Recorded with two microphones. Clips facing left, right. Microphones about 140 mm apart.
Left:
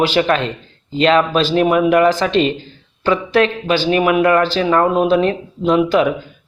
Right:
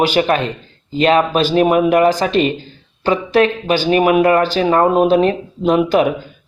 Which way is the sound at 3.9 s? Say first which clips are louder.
Right 2 dB; 30° right (ahead or behind).